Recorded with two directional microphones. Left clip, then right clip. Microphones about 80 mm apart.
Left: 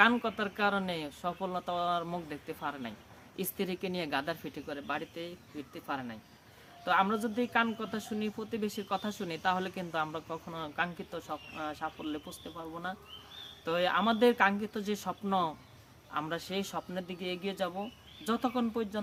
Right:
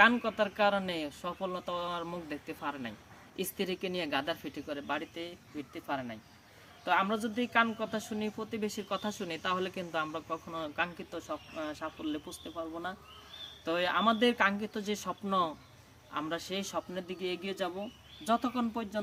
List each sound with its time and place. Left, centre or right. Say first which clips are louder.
0.0 s a woman's voice: right 1 dB; centre
13.7 s speech: even; centre